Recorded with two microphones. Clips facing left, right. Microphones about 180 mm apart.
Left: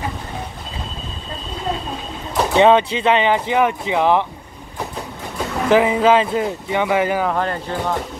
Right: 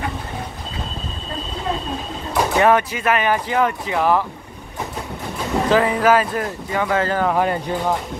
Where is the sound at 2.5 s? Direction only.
20° left (ahead or behind).